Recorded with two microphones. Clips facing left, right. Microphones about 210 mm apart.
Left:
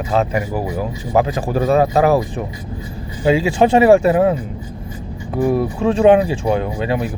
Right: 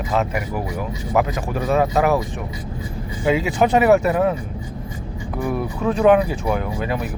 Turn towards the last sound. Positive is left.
turn(degrees=25)  # may be behind; listen again after turning